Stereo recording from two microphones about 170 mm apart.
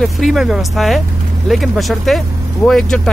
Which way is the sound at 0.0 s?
Centre (ahead or behind).